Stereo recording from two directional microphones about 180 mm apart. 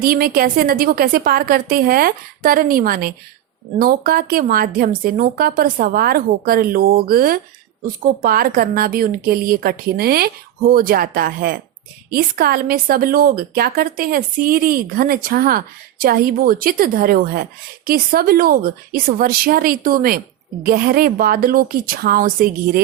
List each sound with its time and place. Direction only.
0.0 s a woman's voice: 55° right (ahead or behind)